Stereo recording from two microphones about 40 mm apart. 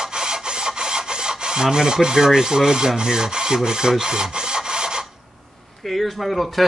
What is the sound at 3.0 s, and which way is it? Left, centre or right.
Rub, centre.